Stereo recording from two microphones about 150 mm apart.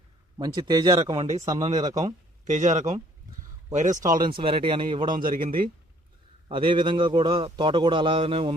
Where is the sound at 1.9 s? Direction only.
25° right (ahead or behind).